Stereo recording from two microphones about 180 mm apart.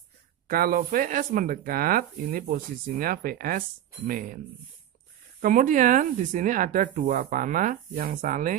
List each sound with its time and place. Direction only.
0.5 s speech: 55° right (ahead or behind)
5.4 s speech: 50° right (ahead or behind)